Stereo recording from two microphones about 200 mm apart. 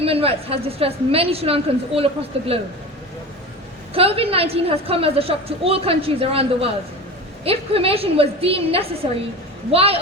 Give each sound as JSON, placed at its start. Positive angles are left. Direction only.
{"t": 0.0, "sound": "a woman's voice", "side_deg": -30}
{"t": 3.9, "sound": "a woman's voice", "side_deg": -30}